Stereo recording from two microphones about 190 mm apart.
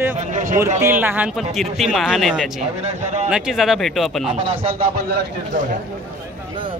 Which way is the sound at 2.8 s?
35° right (ahead or behind).